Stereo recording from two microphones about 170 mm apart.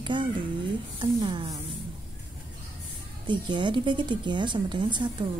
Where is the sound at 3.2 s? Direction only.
25° right (ahead or behind).